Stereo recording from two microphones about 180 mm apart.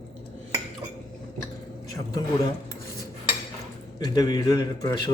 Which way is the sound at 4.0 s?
20° left (ahead or behind).